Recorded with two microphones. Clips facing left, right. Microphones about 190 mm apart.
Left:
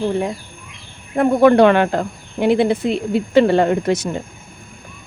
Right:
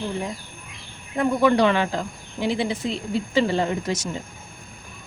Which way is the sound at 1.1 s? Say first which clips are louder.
Left 7 dB; 55° left (ahead or behind).